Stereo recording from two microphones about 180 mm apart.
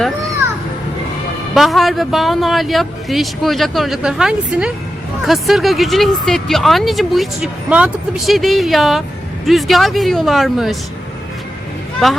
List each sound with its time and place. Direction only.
1.5 s speech: centre (ahead or behind)
12.0 s speech: centre (ahead or behind)